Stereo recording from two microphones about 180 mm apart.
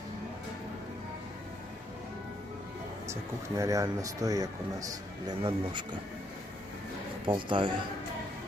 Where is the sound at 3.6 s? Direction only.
20° right (ahead or behind).